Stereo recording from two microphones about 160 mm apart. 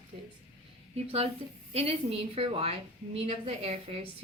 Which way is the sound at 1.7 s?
40° right (ahead or behind).